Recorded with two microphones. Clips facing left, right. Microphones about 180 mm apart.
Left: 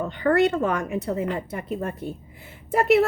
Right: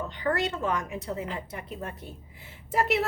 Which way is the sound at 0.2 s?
55° left (ahead or behind).